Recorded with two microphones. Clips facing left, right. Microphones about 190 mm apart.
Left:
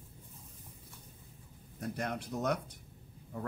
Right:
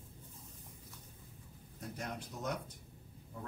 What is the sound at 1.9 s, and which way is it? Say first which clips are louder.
Speech: left 7 dB; 70° left (ahead or behind).